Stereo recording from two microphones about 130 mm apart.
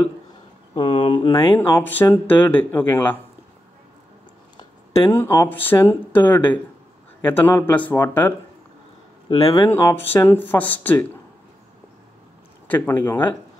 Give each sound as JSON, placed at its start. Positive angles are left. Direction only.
{"t": 0.7, "sound": "speech", "side_deg": 40}
{"t": 1.5, "sound": "speech", "side_deg": 20}
{"t": 4.9, "sound": "speech", "side_deg": 20}
{"t": 9.4, "sound": "speech", "side_deg": 25}
{"t": 12.6, "sound": "speech", "side_deg": 15}